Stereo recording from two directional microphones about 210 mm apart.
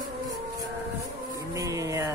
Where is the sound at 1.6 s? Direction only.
15° right (ahead or behind).